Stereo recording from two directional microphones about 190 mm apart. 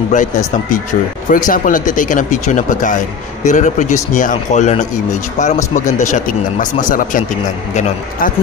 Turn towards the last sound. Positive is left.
turn(degrees=45)  # may be behind; listen again after turning